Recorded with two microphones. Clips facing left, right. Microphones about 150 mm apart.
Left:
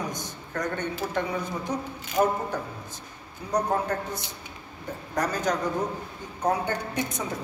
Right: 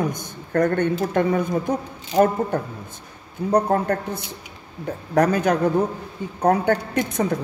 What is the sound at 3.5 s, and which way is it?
Speech, 60° right (ahead or behind).